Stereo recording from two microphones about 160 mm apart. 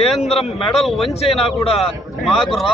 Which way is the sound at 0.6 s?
Centre (ahead or behind).